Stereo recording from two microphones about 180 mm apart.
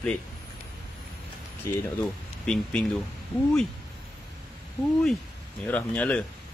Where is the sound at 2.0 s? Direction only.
5° left (ahead or behind).